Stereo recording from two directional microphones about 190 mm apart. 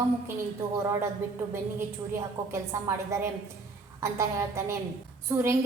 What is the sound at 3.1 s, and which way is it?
A woman's voice, 15° right (ahead or behind).